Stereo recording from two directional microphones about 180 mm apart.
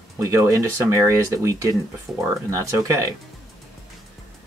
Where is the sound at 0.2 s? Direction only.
15° right (ahead or behind).